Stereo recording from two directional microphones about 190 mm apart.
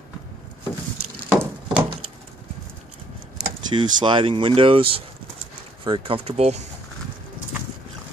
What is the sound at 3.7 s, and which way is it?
Speech, 25° right (ahead or behind).